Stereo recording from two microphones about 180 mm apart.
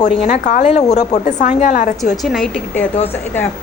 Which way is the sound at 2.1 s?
Centre (ahead or behind).